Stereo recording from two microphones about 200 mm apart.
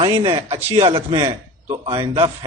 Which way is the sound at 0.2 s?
30° right (ahead or behind).